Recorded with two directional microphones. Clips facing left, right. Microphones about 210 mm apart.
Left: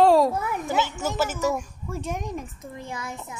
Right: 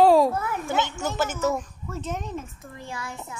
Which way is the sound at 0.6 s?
Centre (ahead or behind).